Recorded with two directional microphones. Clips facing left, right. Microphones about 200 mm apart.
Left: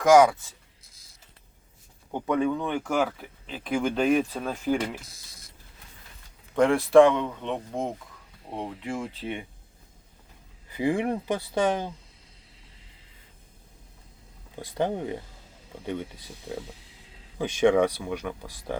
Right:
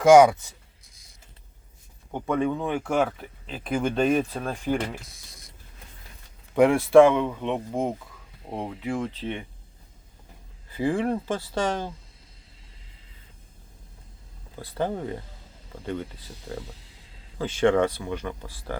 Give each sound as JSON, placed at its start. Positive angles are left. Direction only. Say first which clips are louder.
{"t": 0.2, "sound": "speech", "louder": "right 3 dB", "side_deg": -20}
{"t": 2.2, "sound": "speech", "louder": "even", "side_deg": 0}
{"t": 6.6, "sound": "speech", "louder": "right 2 dB", "side_deg": -5}
{"t": 9.0, "sound": "speech", "louder": "right 3 dB", "side_deg": 10}
{"t": 10.7, "sound": "speech", "louder": "right 1 dB", "side_deg": 15}
{"t": 14.5, "sound": "speech", "louder": "left 1 dB", "side_deg": 15}